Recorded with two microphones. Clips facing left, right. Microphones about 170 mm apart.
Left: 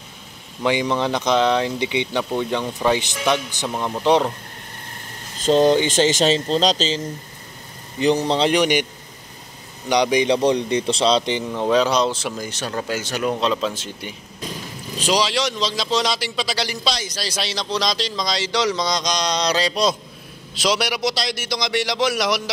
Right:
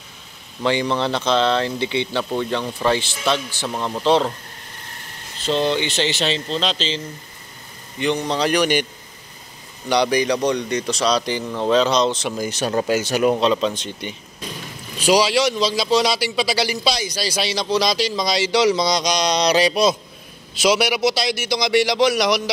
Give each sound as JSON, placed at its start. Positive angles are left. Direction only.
{"t": 0.6, "sound": "speech", "side_deg": 15}
{"t": 5.4, "sound": "speech", "side_deg": 45}
{"t": 8.0, "sound": "speech", "side_deg": 35}
{"t": 9.8, "sound": "speech", "side_deg": 15}
{"t": 12.4, "sound": "speech", "side_deg": -10}
{"t": 13.4, "sound": "a man's voice", "side_deg": 0}
{"t": 15.0, "sound": "a man's voice", "side_deg": -5}